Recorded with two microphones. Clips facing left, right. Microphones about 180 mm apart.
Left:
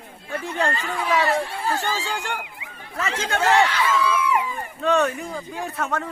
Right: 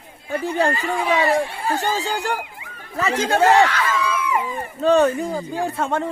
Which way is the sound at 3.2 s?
35° right (ahead or behind).